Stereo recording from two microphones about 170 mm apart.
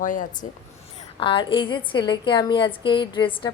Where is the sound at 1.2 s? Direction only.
30° left (ahead or behind).